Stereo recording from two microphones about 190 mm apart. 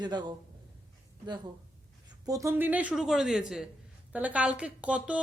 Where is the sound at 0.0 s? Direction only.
25° right (ahead or behind).